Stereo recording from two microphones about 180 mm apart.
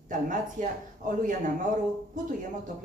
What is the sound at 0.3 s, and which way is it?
Speech, 45° right (ahead or behind).